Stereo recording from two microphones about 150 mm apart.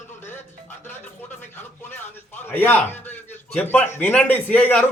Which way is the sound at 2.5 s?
10° left (ahead or behind).